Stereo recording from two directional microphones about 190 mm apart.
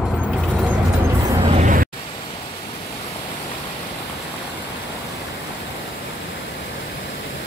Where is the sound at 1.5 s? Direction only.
45° right (ahead or behind).